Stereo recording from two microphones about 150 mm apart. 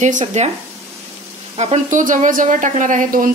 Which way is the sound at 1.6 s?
50° right (ahead or behind).